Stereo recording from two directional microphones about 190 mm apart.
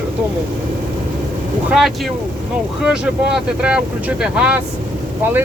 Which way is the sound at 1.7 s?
Centre (ahead or behind).